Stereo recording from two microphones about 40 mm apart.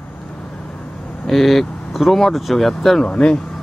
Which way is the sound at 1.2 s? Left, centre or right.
Centre.